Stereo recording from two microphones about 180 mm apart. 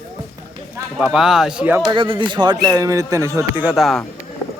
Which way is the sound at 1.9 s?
30° right (ahead or behind).